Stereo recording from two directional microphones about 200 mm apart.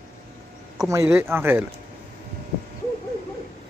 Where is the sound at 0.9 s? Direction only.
15° right (ahead or behind).